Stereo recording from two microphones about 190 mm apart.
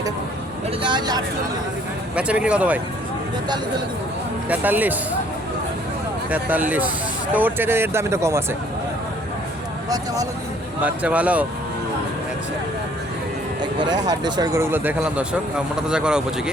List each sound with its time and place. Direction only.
0.8 s speech: 25° right (ahead or behind)
2.1 s speech: 5° right (ahead or behind)
4.4 s speech: 10° right (ahead or behind)
6.3 s speech: 10° right (ahead or behind)
10.8 s speech: 5° right (ahead or behind)
13.6 s speech: 25° right (ahead or behind); by 16.2 s 5° right (ahead or behind)